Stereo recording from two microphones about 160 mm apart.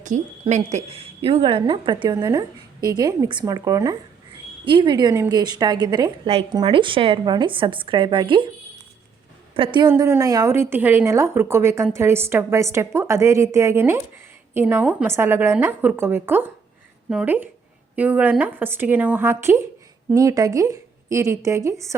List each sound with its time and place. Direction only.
0.0 s a woman's voice: 50° right (ahead or behind); by 8.4 s 30° right (ahead or behind)
9.6 s a woman's voice: 30° right (ahead or behind)
9.9 s a woman's voice: 20° right (ahead or behind)